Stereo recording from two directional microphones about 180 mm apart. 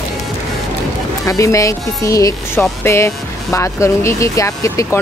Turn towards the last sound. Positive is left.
turn(degrees=15)  # may be behind; listen again after turning